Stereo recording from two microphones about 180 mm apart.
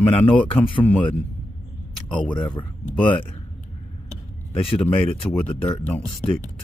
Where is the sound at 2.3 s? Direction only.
25° left (ahead or behind).